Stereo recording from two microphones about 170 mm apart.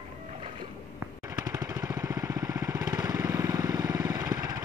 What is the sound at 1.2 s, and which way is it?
Vehicle, 20° right (ahead or behind).